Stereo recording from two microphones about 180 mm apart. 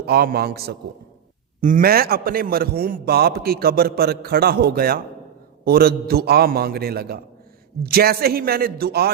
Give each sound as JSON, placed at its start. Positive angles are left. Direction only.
{"t": 0.0, "sound": "a man's voice", "side_deg": -60}